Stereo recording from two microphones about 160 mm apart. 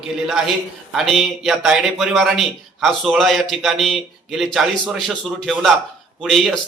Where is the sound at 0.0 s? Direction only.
5° right (ahead or behind).